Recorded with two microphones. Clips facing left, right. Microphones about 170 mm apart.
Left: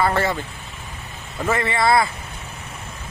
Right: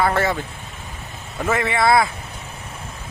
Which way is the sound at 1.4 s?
Centre (ahead or behind).